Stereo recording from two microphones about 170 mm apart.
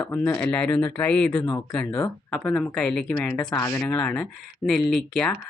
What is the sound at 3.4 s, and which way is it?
Speech, 20° left (ahead or behind).